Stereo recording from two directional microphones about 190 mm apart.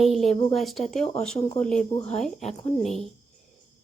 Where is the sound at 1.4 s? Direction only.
35° left (ahead or behind).